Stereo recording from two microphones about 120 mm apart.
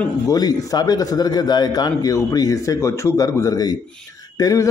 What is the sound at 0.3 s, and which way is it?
A man's voice, 35° left (ahead or behind).